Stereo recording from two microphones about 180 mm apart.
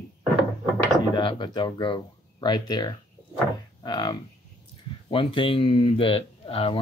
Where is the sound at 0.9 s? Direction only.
25° left (ahead or behind).